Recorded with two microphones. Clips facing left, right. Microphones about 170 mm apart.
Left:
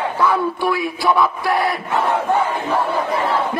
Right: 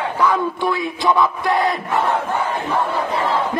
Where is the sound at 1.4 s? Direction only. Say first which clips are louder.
Right 1 dB; 20° right (ahead or behind).